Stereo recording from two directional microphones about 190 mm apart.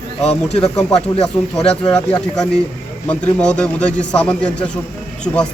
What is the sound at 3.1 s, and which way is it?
A man's voice, 5° left (ahead or behind).